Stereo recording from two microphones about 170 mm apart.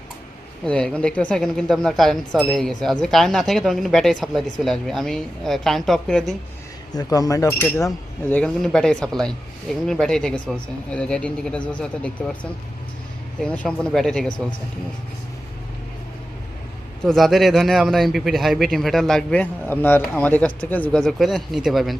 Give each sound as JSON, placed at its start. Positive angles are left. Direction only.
{"t": 0.6, "sound": "speech", "side_deg": 5}
{"t": 6.9, "sound": "speech", "side_deg": 20}
{"t": 8.4, "sound": "speech", "side_deg": 5}
{"t": 13.4, "sound": "speech", "side_deg": 5}
{"t": 17.1, "sound": "speech", "side_deg": 0}